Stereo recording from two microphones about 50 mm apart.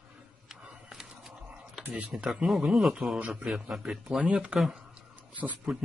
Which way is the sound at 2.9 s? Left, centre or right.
Centre.